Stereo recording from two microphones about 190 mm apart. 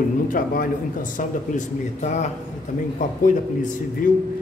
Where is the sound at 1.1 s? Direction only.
40° left (ahead or behind).